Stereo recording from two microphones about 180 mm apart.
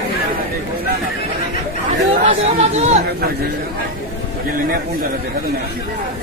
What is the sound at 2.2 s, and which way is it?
Speech, 35° right (ahead or behind).